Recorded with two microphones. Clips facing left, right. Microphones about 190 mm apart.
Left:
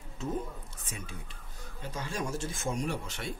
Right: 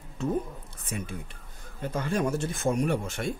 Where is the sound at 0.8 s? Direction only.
60° right (ahead or behind).